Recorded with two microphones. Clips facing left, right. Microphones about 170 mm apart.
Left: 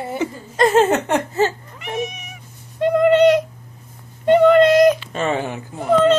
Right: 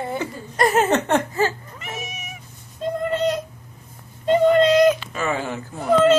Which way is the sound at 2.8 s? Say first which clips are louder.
Left 10 dB; 80° left.